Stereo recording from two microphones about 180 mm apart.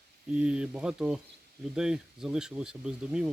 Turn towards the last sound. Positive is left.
turn(degrees=-5)  # may be behind; listen again after turning